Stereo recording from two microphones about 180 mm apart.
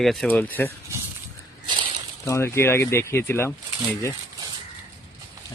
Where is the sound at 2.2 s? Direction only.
15° left (ahead or behind).